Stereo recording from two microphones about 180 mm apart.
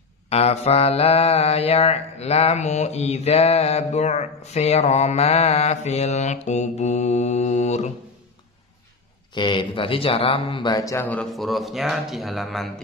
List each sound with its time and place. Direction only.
0.3 s mantra: 35° left (ahead or behind)
9.3 s speech: 25° left (ahead or behind); by 12.8 s centre (ahead or behind)